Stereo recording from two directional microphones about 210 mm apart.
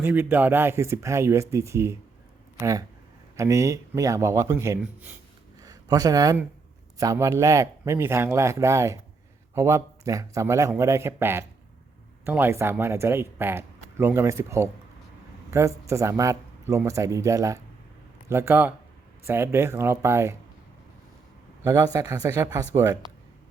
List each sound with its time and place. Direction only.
0.0 s speech: 10° right (ahead or behind)
21.6 s speech: 15° right (ahead or behind)